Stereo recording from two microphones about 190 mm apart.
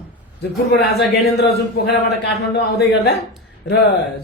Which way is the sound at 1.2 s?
60° left (ahead or behind).